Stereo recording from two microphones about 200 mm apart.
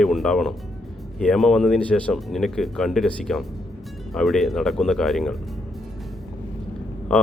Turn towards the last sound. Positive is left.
turn(degrees=0)  # may be behind; listen again after turning